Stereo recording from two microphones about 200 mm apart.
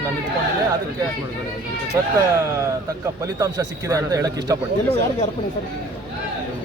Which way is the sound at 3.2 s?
20° right (ahead or behind).